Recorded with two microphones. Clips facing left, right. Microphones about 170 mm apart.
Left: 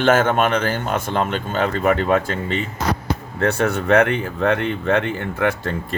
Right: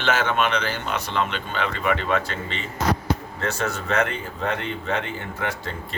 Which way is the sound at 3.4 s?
60° left (ahead or behind).